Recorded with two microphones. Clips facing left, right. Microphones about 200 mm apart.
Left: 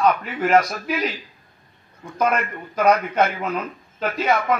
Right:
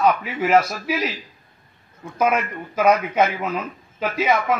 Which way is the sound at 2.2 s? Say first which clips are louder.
Right 1 dB; 5° right (ahead or behind).